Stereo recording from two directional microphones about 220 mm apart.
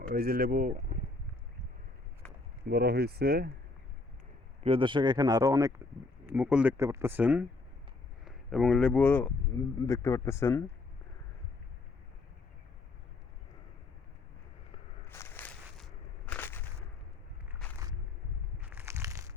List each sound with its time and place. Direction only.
0.1 s speech: 40° right (ahead or behind)
2.6 s speech: 45° right (ahead or behind)
4.6 s speech: 25° right (ahead or behind); by 10.6 s 10° left (ahead or behind)
15.0 s crushing: 10° left (ahead or behind)
17.6 s a sound: centre (ahead or behind)
18.6 s crushing: 10° right (ahead or behind)